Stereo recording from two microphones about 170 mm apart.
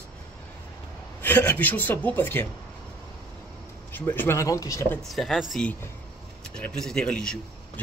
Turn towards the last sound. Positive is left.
turn(degrees=5)  # may be behind; listen again after turning